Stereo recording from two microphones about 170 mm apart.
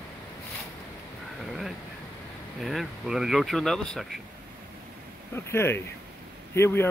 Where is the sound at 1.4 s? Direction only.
Centre (ahead or behind).